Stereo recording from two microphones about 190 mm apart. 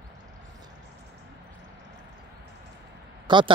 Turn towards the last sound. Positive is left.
turn(degrees=-25)  # may be behind; listen again after turning